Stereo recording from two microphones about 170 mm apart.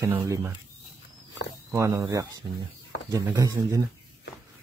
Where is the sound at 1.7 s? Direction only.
20° right (ahead or behind).